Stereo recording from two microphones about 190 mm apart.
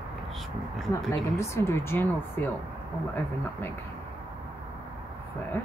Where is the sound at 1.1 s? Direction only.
15° left (ahead or behind).